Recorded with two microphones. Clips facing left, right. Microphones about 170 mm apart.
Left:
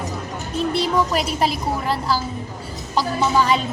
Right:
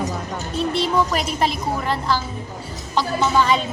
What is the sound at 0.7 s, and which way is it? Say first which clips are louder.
Speech: even; 40° left (ahead or behind).